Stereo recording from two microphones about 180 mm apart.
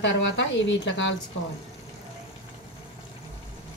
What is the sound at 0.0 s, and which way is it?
Speech, 90° left.